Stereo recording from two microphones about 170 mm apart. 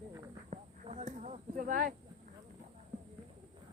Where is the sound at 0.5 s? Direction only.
40° right (ahead or behind).